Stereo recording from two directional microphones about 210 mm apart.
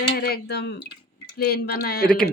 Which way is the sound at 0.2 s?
50° left (ahead or behind).